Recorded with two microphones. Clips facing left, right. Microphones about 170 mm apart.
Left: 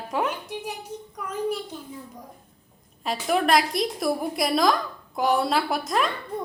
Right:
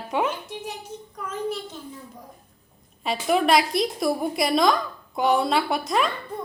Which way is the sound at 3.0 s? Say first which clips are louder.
Right 2 dB; centre (ahead or behind).